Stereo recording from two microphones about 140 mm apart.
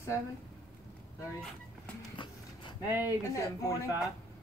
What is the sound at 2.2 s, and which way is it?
Horse, 35° left (ahead or behind).